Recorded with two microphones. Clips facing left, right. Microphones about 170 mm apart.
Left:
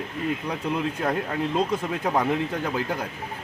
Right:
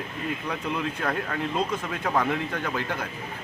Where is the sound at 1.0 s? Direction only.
20° left (ahead or behind).